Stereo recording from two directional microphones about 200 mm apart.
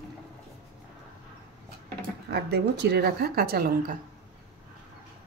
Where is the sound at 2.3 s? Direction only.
55° right (ahead or behind).